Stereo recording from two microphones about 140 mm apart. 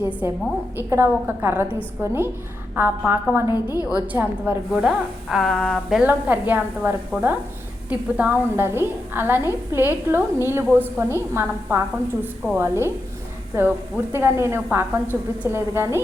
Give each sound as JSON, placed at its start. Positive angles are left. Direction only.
{"t": 0.0, "sound": "a woman's voice", "side_deg": -20}
{"t": 3.5, "sound": "a woman's voice", "side_deg": 25}
{"t": 4.0, "sound": "a woman's voice", "side_deg": -10}
{"t": 6.0, "sound": "a woman's voice", "side_deg": -10}